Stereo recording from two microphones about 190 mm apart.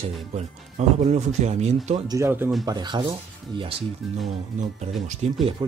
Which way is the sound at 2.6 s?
20° right (ahead or behind).